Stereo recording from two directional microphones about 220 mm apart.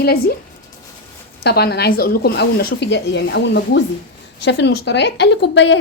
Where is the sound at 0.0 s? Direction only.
45° left (ahead or behind).